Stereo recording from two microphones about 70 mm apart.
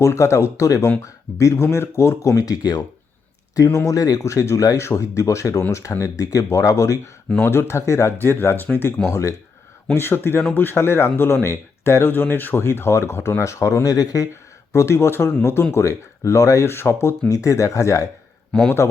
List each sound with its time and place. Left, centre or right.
0.0 s speech: left
7.4 s speech: left
9.0 s speech: left
9.9 s speech: left
13.4 s speech: left
14.7 s speech: left
15.7 s speech: left
16.7 s speech: left
17.2 s speech: left